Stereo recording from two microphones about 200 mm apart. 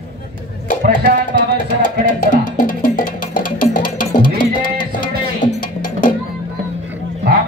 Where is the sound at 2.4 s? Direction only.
45° left (ahead or behind).